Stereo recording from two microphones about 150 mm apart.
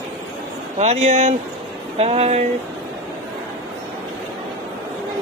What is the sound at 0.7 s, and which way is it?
Speech, 45° right (ahead or behind).